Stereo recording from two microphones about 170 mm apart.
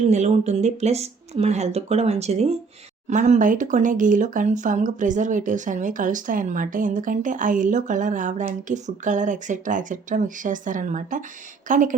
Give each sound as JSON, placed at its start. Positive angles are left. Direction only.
{"t": 0.1, "sound": "speech", "side_deg": -40}